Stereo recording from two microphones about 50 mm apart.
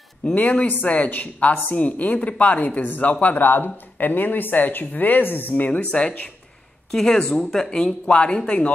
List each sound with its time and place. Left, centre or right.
0.3 s speech: left
6.9 s speech: centre
8.1 s speech: left